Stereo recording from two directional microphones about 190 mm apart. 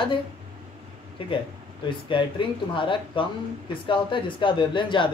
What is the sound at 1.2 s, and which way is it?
A man's voice, 25° left (ahead or behind).